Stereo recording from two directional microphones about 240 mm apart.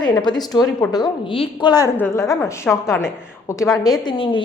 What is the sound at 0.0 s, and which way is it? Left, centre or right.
A woman's voice, centre.